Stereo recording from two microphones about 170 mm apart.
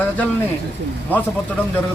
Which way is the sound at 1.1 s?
10° left (ahead or behind).